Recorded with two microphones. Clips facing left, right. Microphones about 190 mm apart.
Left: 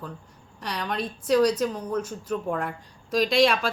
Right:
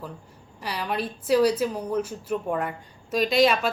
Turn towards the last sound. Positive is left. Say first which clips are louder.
# even
turn(degrees=-5)  # may be behind; listen again after turning